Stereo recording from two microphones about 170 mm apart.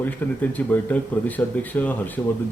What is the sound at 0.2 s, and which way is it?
Speech, 10° left (ahead or behind).